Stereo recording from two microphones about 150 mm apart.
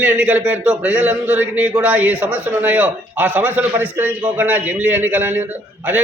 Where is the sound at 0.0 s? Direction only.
10° right (ahead or behind).